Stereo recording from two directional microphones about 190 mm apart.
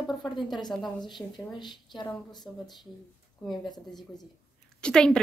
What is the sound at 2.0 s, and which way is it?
Speech, 20° left (ahead or behind).